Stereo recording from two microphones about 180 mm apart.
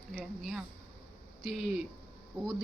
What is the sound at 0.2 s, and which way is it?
Speech, centre (ahead or behind).